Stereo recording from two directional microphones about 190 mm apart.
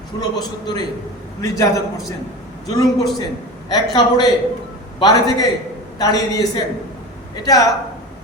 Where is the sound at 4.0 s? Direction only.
20° left (ahead or behind).